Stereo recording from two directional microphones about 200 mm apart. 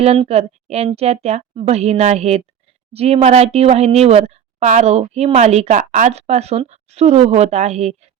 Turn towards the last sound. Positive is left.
turn(degrees=-35)  # may be behind; listen again after turning